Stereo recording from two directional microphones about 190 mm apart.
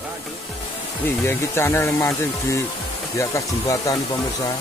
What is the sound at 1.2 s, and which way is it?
Speech, 15° left (ahead or behind).